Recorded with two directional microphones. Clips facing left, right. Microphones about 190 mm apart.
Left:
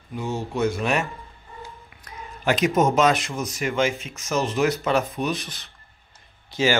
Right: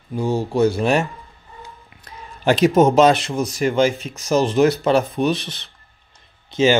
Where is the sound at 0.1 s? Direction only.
35° right (ahead or behind).